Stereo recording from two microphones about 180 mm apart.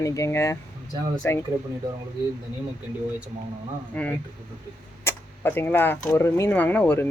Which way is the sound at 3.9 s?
5° left (ahead or behind).